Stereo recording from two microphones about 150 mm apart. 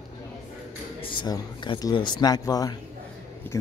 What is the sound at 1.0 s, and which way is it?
Speech, 30° left (ahead or behind).